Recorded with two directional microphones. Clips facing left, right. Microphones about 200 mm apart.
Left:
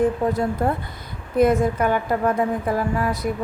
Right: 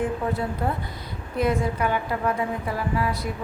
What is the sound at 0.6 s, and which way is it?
A woman's voice, 50° left (ahead or behind).